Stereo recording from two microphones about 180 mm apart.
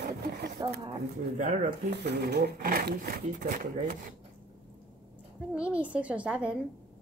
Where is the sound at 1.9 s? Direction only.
65° right (ahead or behind); by 4.1 s 50° right (ahead or behind).